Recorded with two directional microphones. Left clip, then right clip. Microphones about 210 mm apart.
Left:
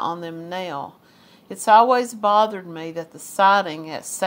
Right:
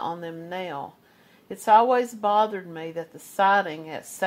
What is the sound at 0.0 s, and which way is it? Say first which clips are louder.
A woman's voice: left 5 dB; 5° right (ahead or behind).